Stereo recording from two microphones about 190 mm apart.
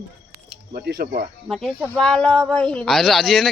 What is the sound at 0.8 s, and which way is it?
Speech, 55° right (ahead or behind).